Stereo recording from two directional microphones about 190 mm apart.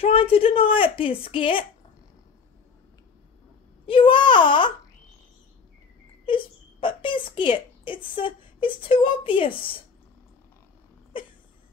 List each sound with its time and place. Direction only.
0.0 s a woman's voice: 30° left (ahead or behind)
3.8 s a woman's voice: 25° left (ahead or behind)
6.2 s speech: 25° left (ahead or behind)